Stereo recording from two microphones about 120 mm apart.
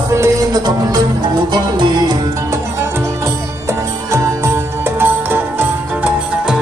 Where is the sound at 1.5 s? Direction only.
40° right (ahead or behind).